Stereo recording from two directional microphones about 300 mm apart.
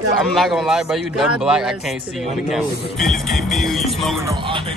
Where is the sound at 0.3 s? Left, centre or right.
Centre.